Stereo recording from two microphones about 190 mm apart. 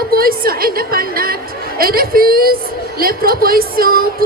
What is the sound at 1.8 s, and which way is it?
A woman's voice, 50° right (ahead or behind).